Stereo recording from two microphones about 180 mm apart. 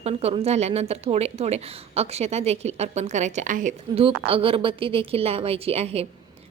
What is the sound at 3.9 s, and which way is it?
Speech, 30° right (ahead or behind).